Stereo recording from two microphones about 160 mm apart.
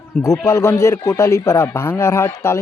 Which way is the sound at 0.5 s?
20° left (ahead or behind).